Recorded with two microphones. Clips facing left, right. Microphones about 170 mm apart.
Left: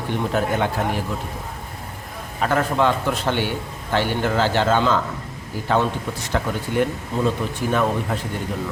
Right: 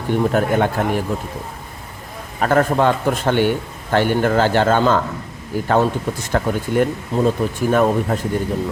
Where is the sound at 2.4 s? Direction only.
50° right (ahead or behind).